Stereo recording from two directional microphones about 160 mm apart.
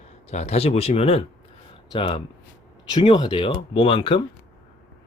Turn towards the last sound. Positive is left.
turn(degrees=35)  # may be behind; listen again after turning